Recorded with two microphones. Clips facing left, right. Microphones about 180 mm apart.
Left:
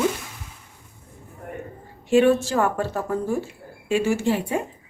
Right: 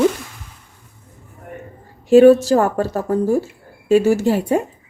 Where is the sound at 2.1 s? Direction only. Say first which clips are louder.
Right 8 dB; 40° right (ahead or behind).